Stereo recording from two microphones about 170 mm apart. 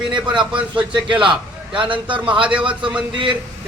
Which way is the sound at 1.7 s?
30° right (ahead or behind).